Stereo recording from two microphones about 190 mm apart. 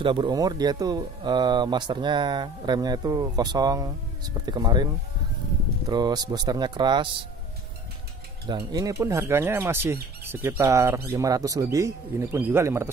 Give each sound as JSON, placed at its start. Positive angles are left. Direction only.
{"t": 0.0, "sound": "speech", "side_deg": -25}
{"t": 5.9, "sound": "speech", "side_deg": -20}
{"t": 8.5, "sound": "speech", "side_deg": -20}